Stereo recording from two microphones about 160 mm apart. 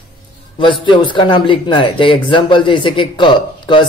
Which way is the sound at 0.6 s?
30° left (ahead or behind).